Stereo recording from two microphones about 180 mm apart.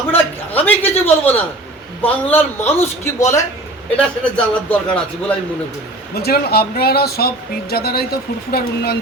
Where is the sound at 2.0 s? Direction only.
10° left (ahead or behind).